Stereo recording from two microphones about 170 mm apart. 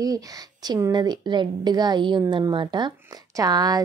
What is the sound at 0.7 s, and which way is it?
A woman's voice, 20° right (ahead or behind).